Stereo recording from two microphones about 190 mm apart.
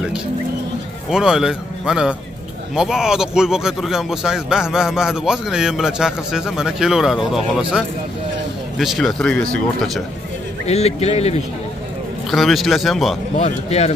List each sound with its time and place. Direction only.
1.1 s speech: 5° right (ahead or behind)
10.7 s speech: 35° left (ahead or behind)
12.3 s speech: centre (ahead or behind)
13.4 s speech: 35° left (ahead or behind)